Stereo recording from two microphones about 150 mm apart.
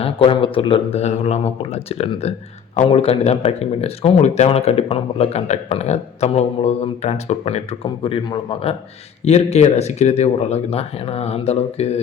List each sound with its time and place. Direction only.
0.0 s speech: 35° left (ahead or behind)
9.2 s speech: 45° left (ahead or behind)